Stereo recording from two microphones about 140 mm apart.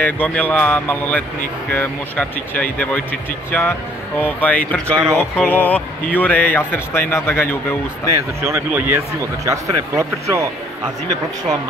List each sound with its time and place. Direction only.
0.0 s speech: 10° left (ahead or behind)
8.4 s speech: 15° right (ahead or behind)